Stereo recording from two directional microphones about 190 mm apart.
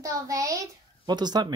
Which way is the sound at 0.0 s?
15° right (ahead or behind).